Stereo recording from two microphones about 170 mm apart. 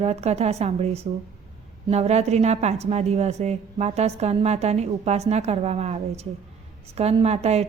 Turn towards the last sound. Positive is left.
turn(degrees=-40)  # may be behind; listen again after turning